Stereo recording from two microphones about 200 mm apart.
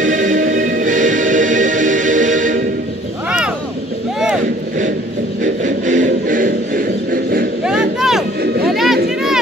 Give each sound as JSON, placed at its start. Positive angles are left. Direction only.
{"t": 0.0, "sound": "music", "side_deg": -40}
{"t": 3.3, "sound": "vehicle", "side_deg": -5}
{"t": 5.4, "sound": "music", "side_deg": -40}
{"t": 7.6, "sound": "crowd", "side_deg": -5}
{"t": 8.6, "sound": "a sound", "side_deg": 0}